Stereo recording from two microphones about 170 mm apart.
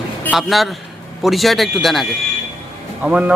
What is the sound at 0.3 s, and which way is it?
Speech, centre (ahead or behind).